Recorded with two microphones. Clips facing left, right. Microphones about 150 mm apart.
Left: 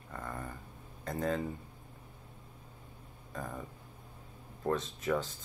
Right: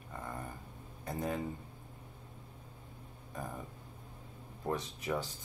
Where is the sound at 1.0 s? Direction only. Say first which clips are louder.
Left 3 dB; 15° right (ahead or behind).